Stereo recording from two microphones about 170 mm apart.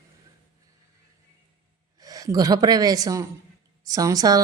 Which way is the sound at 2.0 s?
20° right (ahead or behind).